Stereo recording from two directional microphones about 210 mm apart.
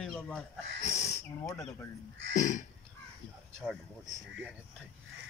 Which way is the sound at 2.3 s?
35° left (ahead or behind).